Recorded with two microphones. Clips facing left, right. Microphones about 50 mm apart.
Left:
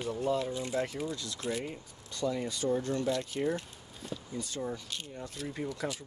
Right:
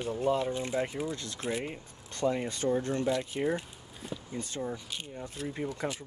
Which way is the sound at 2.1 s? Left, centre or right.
Right.